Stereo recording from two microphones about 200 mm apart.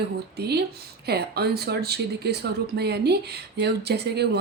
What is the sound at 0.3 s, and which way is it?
A woman's voice, 55° right (ahead or behind).